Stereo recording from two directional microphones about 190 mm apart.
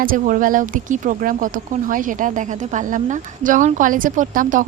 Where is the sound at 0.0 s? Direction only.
45° right (ahead or behind).